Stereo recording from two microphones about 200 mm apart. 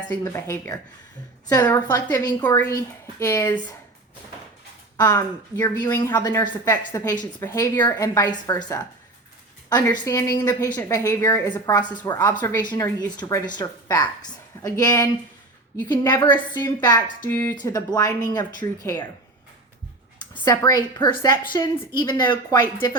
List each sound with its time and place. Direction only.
0.1 s a woman's voice: 15° left (ahead or behind)
4.9 s a woman's voice: 15° left (ahead or behind)
10.0 s a woman's voice: 15° left (ahead or behind)
20.1 s a woman's voice: 20° left (ahead or behind)